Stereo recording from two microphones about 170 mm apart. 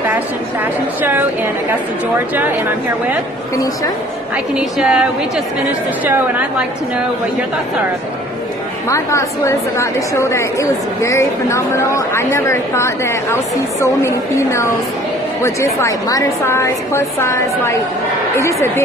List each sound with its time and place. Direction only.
1.0 s speech: 10° right (ahead or behind)
3.5 s a woman's voice: 20° left (ahead or behind)
4.6 s a woman's voice: 5° right (ahead or behind)
6.0 s speech: 10° right (ahead or behind)
8.8 s a woman's voice: 15° left (ahead or behind)